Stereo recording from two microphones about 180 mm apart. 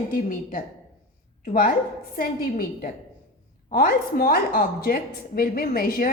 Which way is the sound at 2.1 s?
55° left (ahead or behind).